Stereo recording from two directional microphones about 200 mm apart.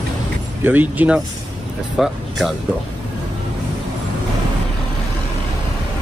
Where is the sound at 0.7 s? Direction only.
10° right (ahead or behind).